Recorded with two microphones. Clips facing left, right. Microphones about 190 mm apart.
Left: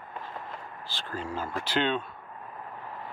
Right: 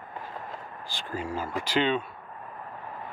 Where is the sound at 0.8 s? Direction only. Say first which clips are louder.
Right 2 dB; 10° right (ahead or behind).